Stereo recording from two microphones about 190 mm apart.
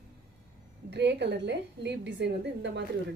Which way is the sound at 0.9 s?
65° right (ahead or behind).